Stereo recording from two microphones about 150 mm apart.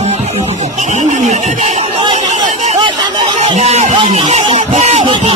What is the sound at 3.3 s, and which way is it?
Speech, 45° right (ahead or behind).